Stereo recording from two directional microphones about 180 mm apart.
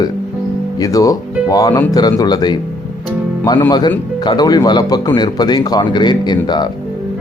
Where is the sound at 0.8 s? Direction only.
20° left (ahead or behind).